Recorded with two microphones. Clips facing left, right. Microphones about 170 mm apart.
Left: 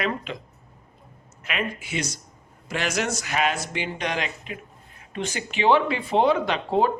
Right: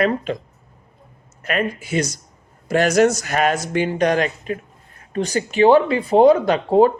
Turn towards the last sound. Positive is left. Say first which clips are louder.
# right 8 dB
turn(degrees=-40)  # may be behind; listen again after turning